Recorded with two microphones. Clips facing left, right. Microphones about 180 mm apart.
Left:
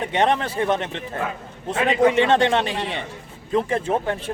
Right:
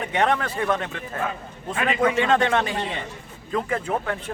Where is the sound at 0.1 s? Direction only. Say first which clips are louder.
Left 1 dB; 25° left (ahead or behind).